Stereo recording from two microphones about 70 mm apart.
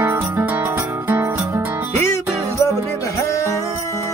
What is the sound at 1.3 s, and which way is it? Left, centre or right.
Music, right.